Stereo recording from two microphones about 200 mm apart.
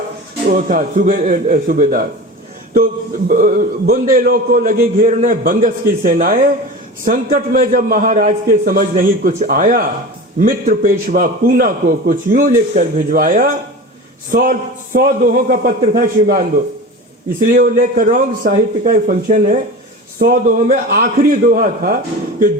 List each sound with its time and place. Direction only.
0.5 s a man's voice: 40° right (ahead or behind)
17.4 s a man's voice: 40° right (ahead or behind)